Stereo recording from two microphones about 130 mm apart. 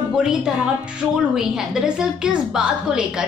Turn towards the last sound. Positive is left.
turn(degrees=-5)  # may be behind; listen again after turning